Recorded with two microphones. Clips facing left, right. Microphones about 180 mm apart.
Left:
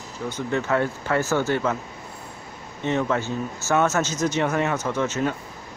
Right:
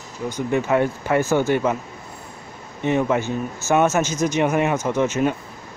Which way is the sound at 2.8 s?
15° right (ahead or behind).